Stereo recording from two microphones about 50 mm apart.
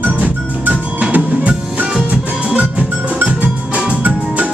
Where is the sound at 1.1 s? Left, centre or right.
Right.